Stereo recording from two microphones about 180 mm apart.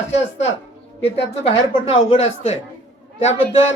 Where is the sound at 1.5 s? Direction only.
30° left (ahead or behind).